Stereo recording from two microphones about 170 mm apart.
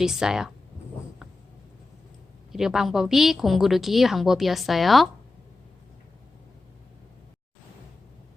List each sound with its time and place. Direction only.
0.0 s a woman's voice: 5° right (ahead or behind)
2.5 s a woman's voice: 5° right (ahead or behind)